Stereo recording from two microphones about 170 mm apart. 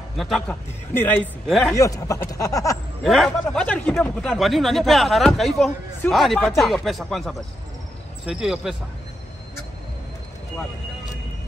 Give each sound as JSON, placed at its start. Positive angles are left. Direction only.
{"t": 0.2, "sound": "a man's voice", "side_deg": 0}
{"t": 1.5, "sound": "speech", "side_deg": 0}
{"t": 1.8, "sound": "speech", "side_deg": 20}
{"t": 3.0, "sound": "speech", "side_deg": 0}